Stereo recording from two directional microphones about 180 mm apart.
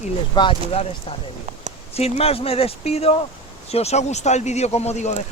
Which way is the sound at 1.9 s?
35° left (ahead or behind).